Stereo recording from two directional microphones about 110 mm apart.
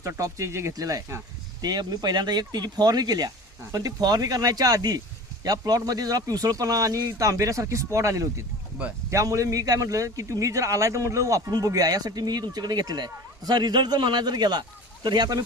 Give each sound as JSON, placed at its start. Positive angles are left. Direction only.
{"t": 0.0, "sound": "speech", "side_deg": -30}